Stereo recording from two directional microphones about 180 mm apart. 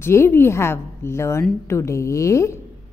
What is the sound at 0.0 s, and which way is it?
A woman's voice, 15° left (ahead or behind).